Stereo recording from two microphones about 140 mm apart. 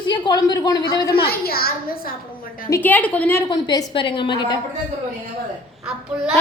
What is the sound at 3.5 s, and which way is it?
A woman's voice, 30° left (ahead or behind).